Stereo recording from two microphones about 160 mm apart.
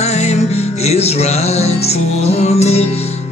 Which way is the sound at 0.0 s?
40° left (ahead or behind).